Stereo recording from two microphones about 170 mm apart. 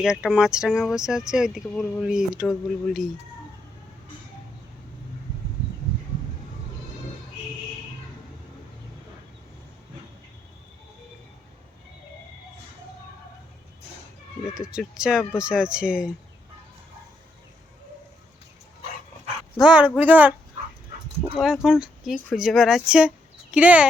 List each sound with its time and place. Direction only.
0.0 s speech: 5° right (ahead or behind)
14.5 s speech: 5° right (ahead or behind)
19.5 s speech: 5° right (ahead or behind)
21.3 s speech: 5° right (ahead or behind)